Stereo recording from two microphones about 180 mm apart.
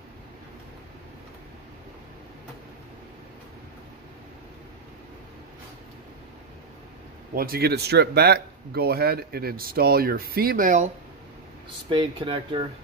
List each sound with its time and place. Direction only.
7.3 s speech: 55° right (ahead or behind)
11.9 s speech: 25° right (ahead or behind)